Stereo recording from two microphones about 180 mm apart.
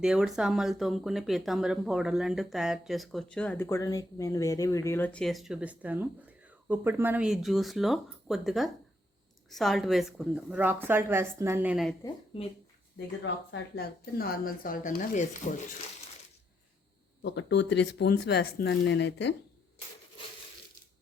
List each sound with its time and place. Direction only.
0.0 s a woman's voice: 5° right (ahead or behind)
12.0 s speech: 30° left (ahead or behind)
13.2 s speech: 75° left (ahead or behind); by 15.4 s 45° left (ahead or behind)
17.2 s speech: 70° left (ahead or behind)